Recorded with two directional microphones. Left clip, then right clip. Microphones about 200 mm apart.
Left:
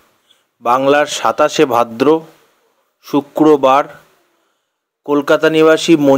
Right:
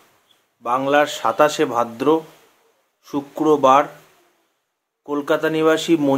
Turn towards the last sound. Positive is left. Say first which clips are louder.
# left 7 dB
turn(degrees=30)  # may be behind; listen again after turning